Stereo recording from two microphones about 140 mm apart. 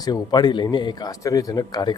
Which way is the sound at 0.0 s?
30° left (ahead or behind).